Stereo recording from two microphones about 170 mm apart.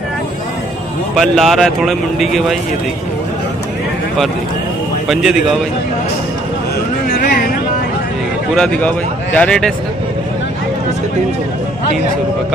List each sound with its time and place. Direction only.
1.1 s speech: centre (ahead or behind)
5.0 s a man's voice: centre (ahead or behind)
7.1 s a sound: 55° left (ahead or behind)
8.5 s a man's voice: 5° left (ahead or behind)